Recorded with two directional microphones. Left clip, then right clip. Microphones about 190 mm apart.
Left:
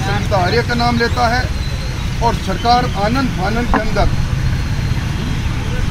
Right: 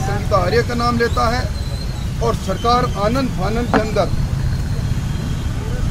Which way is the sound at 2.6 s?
30° right (ahead or behind).